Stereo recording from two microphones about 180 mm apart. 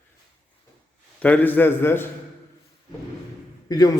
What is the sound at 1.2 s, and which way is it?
Speech, 10° left (ahead or behind).